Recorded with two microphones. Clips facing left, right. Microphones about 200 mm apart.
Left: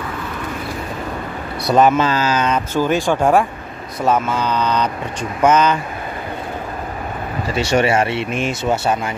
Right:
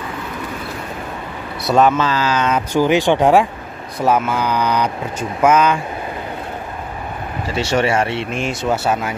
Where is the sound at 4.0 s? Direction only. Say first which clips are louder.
Right 1 dB; 10° right (ahead or behind).